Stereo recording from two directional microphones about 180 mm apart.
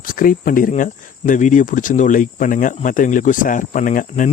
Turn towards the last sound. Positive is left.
turn(degrees=45)  # may be behind; listen again after turning